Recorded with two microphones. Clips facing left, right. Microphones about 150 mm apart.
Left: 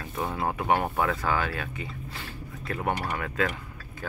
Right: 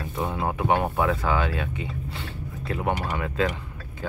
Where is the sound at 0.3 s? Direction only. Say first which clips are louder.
Right 2 dB; 15° right (ahead or behind).